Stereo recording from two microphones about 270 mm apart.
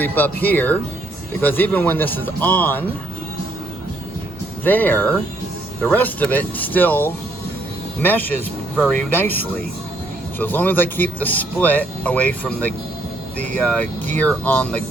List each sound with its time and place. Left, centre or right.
0.0 s speech: centre
4.6 s speech: centre